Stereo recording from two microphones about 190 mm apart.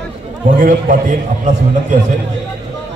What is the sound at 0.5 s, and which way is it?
Speech, 45° right (ahead or behind).